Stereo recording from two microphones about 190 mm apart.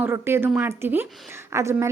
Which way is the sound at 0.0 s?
10° right (ahead or behind).